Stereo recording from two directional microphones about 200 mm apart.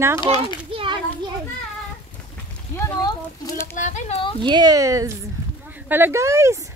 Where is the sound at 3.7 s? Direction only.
40° left (ahead or behind).